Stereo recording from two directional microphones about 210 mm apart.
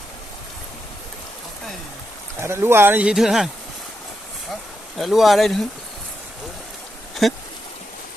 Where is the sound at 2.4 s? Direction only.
10° right (ahead or behind).